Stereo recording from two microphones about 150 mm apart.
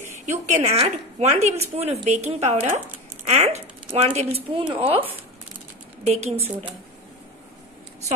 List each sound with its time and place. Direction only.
0.3 s a woman's voice: 50° right (ahead or behind)
6.0 s a woman's voice: 45° right (ahead or behind)